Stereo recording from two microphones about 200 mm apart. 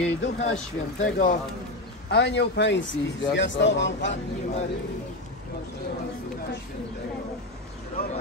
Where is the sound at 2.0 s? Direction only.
60° left (ahead or behind).